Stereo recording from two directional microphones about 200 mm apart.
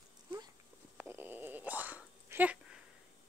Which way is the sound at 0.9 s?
10° right (ahead or behind).